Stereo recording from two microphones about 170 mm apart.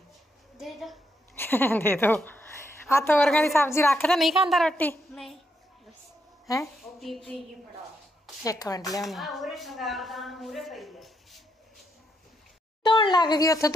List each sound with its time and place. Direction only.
0.6 s a woman's voice: centre (ahead or behind)
1.3 s a woman's voice: 15° left (ahead or behind)
4.1 s a woman's voice: centre (ahead or behind)
6.4 s speech: 20° left (ahead or behind)
6.8 s a woman's voice: centre (ahead or behind)
8.5 s speech: 20° left (ahead or behind)
9.0 s a woman's voice: centre (ahead or behind)
12.8 s speech: 30° left (ahead or behind)